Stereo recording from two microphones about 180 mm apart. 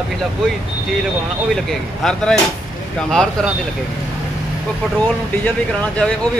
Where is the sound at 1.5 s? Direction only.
Centre (ahead or behind).